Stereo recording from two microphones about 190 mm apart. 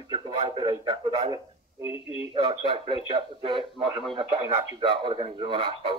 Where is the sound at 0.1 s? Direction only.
25° right (ahead or behind).